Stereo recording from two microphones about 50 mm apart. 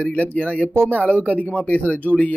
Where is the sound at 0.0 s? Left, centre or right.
Left.